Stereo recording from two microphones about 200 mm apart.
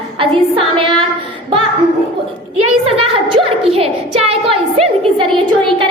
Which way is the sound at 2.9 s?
30° right (ahead or behind).